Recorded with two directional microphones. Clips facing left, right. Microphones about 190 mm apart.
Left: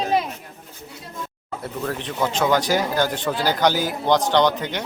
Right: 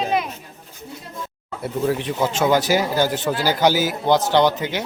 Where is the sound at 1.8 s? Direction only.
10° right (ahead or behind).